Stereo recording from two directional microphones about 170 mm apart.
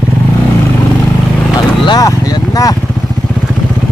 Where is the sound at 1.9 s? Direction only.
20° left (ahead or behind).